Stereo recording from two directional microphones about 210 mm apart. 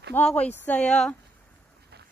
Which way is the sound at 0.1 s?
5° left (ahead or behind).